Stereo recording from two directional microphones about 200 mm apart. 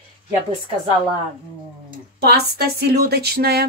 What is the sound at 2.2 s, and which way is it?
Speech, 50° right (ahead or behind).